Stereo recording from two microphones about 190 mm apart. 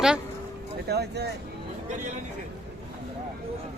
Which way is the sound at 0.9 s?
60° right (ahead or behind).